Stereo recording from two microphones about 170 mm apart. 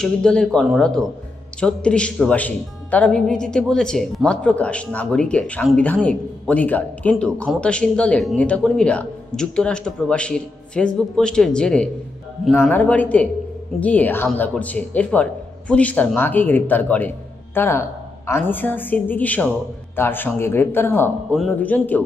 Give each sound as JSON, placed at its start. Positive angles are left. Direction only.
{"t": 0.0, "sound": "speech", "side_deg": 5}